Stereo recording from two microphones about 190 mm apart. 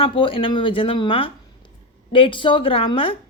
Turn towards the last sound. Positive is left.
turn(degrees=30)  # may be behind; listen again after turning